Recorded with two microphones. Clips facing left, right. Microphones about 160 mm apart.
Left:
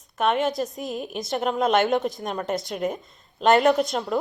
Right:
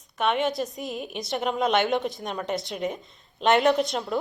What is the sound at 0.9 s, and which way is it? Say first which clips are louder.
Speech: left 3 dB; 45° left (ahead or behind).